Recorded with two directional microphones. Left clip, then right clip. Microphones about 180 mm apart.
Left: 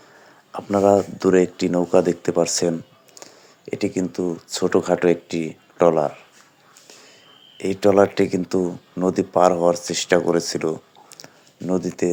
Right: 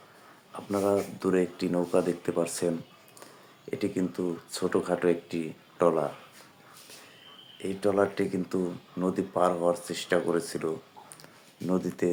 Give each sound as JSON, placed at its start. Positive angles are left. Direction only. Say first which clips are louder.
{"t": 0.5, "sound": "speech", "louder": "left 11 dB", "side_deg": 40}
{"t": 7.6, "sound": "speech", "louder": "left 10 dB", "side_deg": 40}
{"t": 11.2, "sound": "a sound", "louder": "left 6 dB", "side_deg": 30}